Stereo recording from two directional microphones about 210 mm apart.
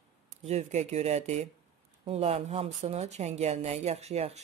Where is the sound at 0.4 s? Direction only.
30° right (ahead or behind).